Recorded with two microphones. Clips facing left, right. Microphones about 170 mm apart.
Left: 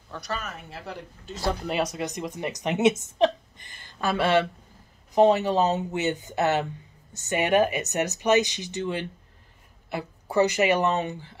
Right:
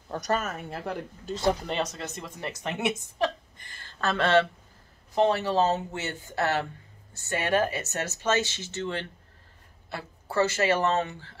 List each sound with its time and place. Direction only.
0.1 s speech: 45° right (ahead or behind)
1.7 s speech: 10° left (ahead or behind)